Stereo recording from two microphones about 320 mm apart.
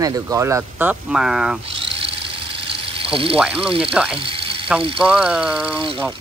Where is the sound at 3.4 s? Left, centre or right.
Centre.